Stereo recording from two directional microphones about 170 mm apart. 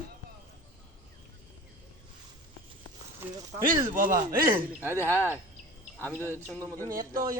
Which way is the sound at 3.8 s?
55° right (ahead or behind).